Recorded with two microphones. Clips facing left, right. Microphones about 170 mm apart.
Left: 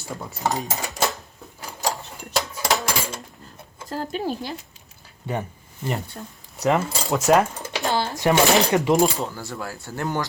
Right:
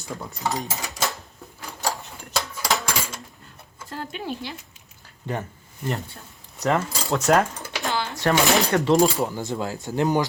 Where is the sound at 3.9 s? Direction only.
40° left (ahead or behind).